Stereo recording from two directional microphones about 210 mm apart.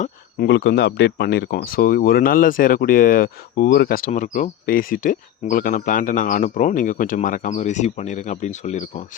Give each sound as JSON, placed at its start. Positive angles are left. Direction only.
{"t": 0.0, "sound": "speech", "side_deg": 50}